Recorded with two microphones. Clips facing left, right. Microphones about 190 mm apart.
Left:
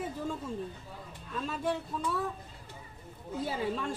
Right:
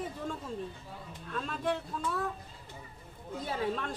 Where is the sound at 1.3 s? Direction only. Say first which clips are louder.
Even; 5° left (ahead or behind).